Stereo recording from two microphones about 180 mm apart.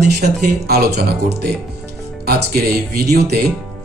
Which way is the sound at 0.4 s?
60° right (ahead or behind).